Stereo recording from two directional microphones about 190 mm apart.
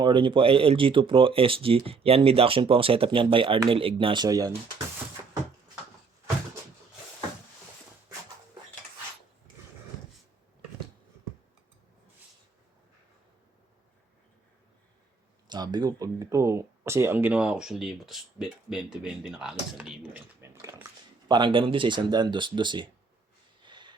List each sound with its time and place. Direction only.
0.0 s speech: 25° right (ahead or behind)
15.4 s speech: 20° right (ahead or behind)
23.6 s a sound: 25° right (ahead or behind)